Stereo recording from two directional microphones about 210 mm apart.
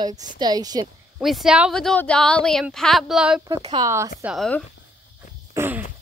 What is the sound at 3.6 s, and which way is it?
Speech, 20° right (ahead or behind).